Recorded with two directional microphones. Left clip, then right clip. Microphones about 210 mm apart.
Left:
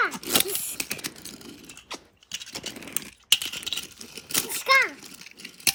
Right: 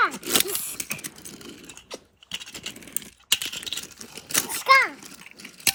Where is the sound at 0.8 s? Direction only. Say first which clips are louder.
Left 1 dB; 35° left (ahead or behind).